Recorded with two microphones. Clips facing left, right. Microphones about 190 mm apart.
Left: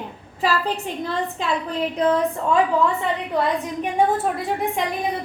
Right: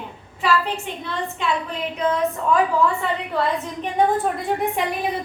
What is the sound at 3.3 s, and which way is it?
Speech, 15° left (ahead or behind).